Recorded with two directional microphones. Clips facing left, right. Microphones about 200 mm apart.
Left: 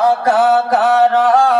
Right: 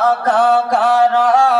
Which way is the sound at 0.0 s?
10° left (ahead or behind).